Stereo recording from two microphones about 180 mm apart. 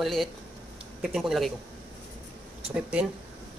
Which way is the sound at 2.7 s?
5° right (ahead or behind).